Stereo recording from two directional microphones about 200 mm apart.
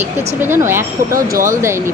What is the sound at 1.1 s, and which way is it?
Speech, 45° right (ahead or behind).